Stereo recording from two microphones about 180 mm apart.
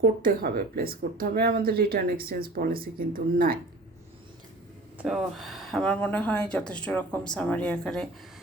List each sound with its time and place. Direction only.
0.0 s speech: 55° right (ahead or behind)
5.0 s speech: centre (ahead or behind)